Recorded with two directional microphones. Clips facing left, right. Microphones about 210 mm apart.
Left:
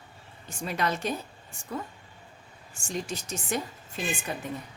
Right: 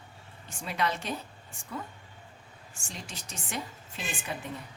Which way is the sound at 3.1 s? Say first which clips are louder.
Left 8 dB; 45° left (ahead or behind).